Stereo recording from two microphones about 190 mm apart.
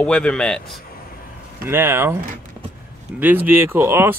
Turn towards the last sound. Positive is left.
turn(degrees=-15)  # may be behind; listen again after turning